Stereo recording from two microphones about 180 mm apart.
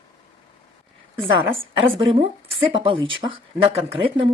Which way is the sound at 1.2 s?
30° right (ahead or behind).